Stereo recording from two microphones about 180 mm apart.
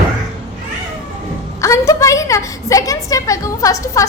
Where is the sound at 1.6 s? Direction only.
15° left (ahead or behind).